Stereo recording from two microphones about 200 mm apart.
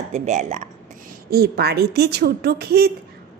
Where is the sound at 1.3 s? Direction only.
50° right (ahead or behind).